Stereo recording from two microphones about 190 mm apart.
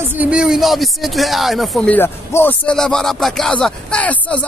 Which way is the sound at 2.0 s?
10° left (ahead or behind).